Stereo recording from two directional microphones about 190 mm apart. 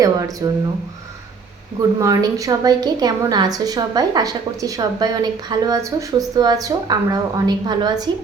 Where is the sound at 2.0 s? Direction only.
15° right (ahead or behind).